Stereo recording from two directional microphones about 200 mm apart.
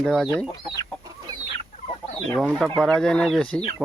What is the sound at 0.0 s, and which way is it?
Speech, centre (ahead or behind).